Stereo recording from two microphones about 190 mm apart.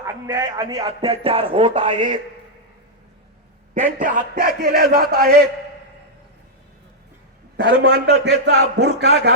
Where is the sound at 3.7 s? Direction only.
45° right (ahead or behind).